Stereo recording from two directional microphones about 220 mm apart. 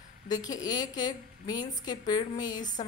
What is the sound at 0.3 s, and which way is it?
A woman's voice, 15° left (ahead or behind).